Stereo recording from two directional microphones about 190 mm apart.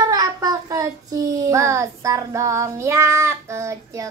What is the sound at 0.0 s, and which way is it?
Child singing, 20° right (ahead or behind).